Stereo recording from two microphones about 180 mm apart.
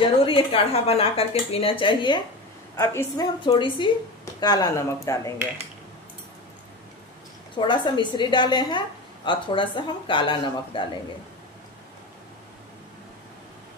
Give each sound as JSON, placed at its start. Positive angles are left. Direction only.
{"t": 0.0, "sound": "speech", "side_deg": 30}
{"t": 2.7, "sound": "a woman's voice", "side_deg": 15}
{"t": 7.5, "sound": "a woman's voice", "side_deg": 25}